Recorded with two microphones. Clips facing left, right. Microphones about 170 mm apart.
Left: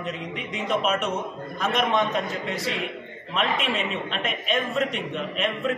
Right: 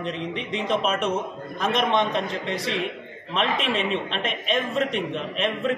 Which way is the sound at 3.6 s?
30° right (ahead or behind).